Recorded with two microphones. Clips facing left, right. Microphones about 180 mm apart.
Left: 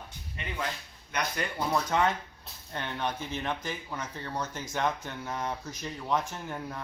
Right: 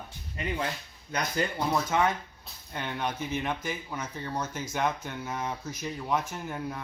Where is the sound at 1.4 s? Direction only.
30° right (ahead or behind).